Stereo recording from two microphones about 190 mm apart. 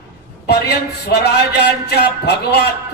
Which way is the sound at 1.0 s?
60° left (ahead or behind).